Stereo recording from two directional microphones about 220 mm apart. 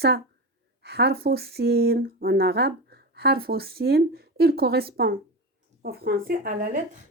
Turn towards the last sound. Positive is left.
turn(degrees=-35)  # may be behind; listen again after turning